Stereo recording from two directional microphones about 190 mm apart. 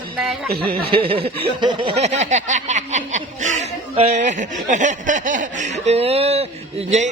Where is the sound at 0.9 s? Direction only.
30° right (ahead or behind).